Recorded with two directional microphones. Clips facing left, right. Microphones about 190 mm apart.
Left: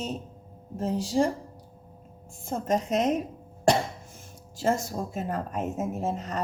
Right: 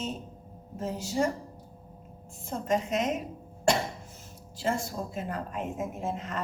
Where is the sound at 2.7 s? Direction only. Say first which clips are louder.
Left 3 dB; 40° left (ahead or behind).